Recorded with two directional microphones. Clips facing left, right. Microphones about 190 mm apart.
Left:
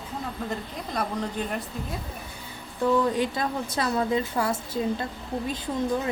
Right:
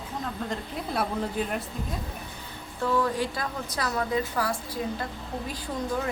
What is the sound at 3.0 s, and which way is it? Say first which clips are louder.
A woman's voice: left 3 dB; 20° left (ahead or behind).